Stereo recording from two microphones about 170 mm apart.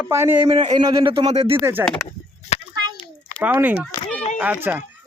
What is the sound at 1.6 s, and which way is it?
Speech, 15° right (ahead or behind).